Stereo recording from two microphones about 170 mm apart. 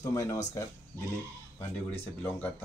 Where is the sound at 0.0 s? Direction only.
15° left (ahead or behind).